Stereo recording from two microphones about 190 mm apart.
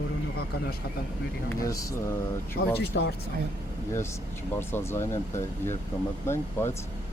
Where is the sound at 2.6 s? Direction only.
90° left.